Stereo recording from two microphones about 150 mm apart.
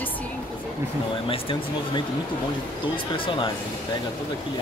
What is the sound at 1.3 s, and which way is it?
Speech, 35° left (ahead or behind).